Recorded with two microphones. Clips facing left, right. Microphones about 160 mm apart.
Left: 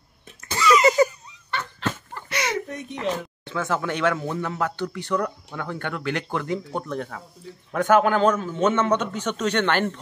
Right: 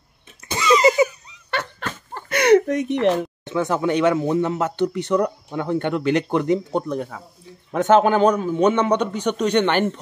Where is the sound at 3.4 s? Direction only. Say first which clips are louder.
Right 3 dB; 20° right (ahead or behind).